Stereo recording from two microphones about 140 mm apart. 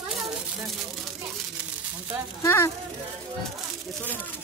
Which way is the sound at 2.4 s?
20° left (ahead or behind).